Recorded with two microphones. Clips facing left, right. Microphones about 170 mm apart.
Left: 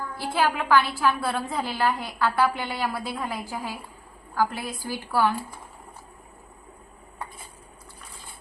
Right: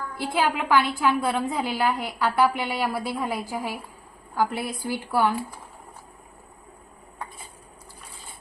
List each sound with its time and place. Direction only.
0.2 s a woman's voice: 20° right (ahead or behind)